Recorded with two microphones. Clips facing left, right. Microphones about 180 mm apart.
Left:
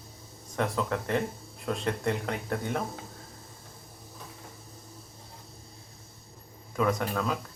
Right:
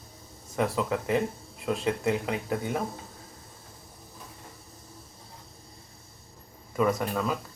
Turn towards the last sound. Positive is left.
turn(degrees=-5)  # may be behind; listen again after turning